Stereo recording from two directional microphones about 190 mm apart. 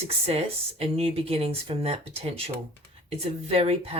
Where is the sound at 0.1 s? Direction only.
35° right (ahead or behind).